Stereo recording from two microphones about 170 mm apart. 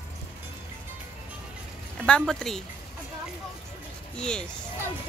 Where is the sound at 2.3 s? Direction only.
5° left (ahead or behind).